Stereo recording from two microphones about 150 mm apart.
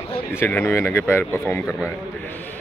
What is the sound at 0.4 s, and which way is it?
Speech, 10° left (ahead or behind).